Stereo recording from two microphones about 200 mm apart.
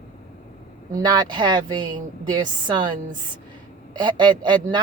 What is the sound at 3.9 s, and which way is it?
Speech, 20° right (ahead or behind).